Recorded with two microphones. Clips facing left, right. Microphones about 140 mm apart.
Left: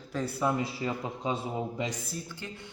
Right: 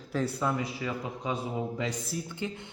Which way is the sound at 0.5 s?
30° left (ahead or behind).